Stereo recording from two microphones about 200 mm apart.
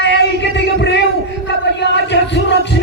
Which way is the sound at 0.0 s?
60° left (ahead or behind).